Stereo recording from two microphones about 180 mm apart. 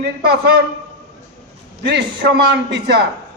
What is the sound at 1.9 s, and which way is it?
A man's voice, 70° right (ahead or behind).